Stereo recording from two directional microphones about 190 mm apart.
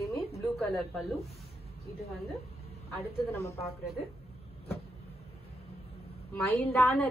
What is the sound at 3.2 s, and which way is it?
Speech, 15° left (ahead or behind).